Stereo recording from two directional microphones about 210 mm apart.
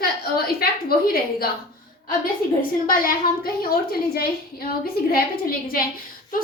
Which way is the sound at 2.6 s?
45° left (ahead or behind).